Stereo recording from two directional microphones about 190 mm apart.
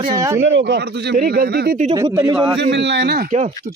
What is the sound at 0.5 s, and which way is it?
Speech, 65° right (ahead or behind).